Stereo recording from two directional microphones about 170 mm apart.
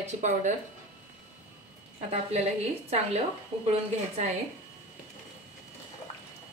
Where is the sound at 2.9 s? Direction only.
40° right (ahead or behind).